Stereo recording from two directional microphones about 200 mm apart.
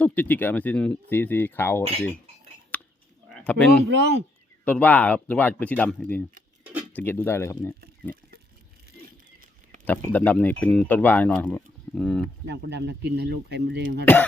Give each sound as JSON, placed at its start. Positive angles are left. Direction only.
{"t": 0.0, "sound": "speech", "side_deg": 10}
{"t": 2.7, "sound": "a sound", "side_deg": 10}
{"t": 3.3, "sound": "speech", "side_deg": 5}
{"t": 3.8, "sound": "speech", "side_deg": -60}
{"t": 4.6, "sound": "speech", "side_deg": 5}
{"t": 9.8, "sound": "speech", "side_deg": 10}
{"t": 12.5, "sound": "speech", "side_deg": -60}
{"t": 14.0, "sound": "speech", "side_deg": 10}